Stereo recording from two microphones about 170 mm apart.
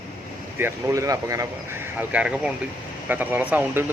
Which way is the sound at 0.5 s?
15° right (ahead or behind).